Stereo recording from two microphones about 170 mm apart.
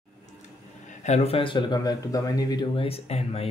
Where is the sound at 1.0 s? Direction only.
40° left (ahead or behind).